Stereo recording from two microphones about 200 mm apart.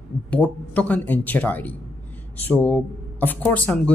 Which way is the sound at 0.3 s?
5° left (ahead or behind).